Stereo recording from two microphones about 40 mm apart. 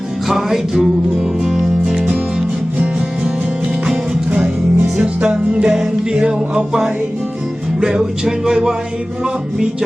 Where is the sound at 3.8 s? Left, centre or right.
Centre.